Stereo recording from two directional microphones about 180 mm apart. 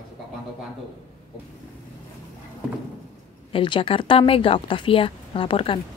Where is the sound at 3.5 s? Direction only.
30° left (ahead or behind).